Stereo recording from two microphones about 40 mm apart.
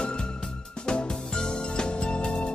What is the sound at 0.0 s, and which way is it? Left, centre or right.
Music, left.